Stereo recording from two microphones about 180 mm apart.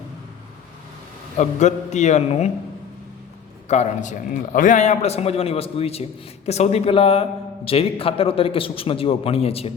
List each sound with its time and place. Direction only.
1.4 s a man's voice: 40° left (ahead or behind)
3.7 s a man's voice: 40° left (ahead or behind)